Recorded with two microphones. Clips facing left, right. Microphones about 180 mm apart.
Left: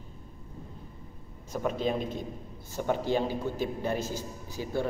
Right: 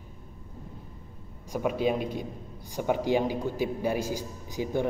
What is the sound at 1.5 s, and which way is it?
A man's voice, 10° right (ahead or behind).